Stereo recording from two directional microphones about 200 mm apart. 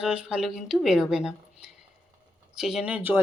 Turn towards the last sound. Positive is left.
turn(degrees=-10)  # may be behind; listen again after turning